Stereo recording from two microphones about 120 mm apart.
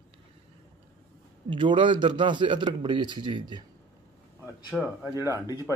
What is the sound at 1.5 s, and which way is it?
A man's voice, 45° right (ahead or behind).